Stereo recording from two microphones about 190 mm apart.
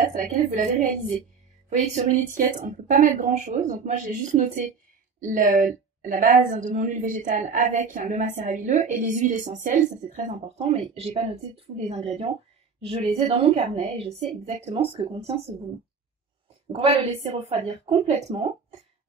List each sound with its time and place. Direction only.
0.1 s a woman's voice: 40° right (ahead or behind)
16.6 s a woman's voice: 30° right (ahead or behind)